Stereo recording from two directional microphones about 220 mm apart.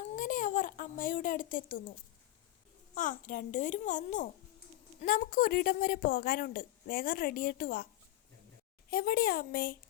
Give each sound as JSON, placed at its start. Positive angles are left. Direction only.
{"t": 0.2, "sound": "a sound", "side_deg": 35}
{"t": 2.9, "sound": "a woman's voice", "side_deg": 35}
{"t": 8.9, "sound": "speech", "side_deg": 45}